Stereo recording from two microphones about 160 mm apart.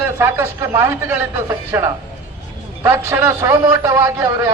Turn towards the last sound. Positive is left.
turn(degrees=-20)  # may be behind; listen again after turning